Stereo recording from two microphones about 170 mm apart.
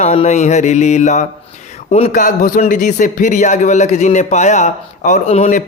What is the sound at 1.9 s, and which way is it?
A man's voice, 45° left (ahead or behind).